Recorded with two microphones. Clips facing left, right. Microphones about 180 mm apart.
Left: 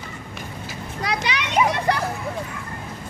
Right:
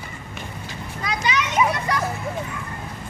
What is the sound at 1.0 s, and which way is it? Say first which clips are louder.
Children playing: right 1 dB; 70° left (ahead or behind).